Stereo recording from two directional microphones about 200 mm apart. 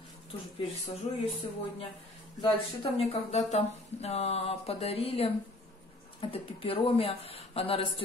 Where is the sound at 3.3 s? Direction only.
30° left (ahead or behind).